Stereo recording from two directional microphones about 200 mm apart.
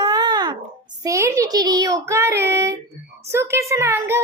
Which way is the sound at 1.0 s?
15° right (ahead or behind).